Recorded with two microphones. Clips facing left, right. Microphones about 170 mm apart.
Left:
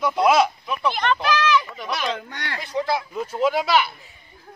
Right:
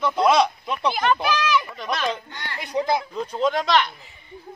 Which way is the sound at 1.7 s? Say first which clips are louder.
Right 1 dB; 10° left (ahead or behind).